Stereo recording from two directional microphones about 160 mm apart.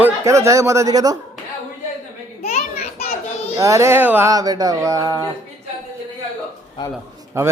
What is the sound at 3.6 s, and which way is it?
A man's voice, 20° right (ahead or behind).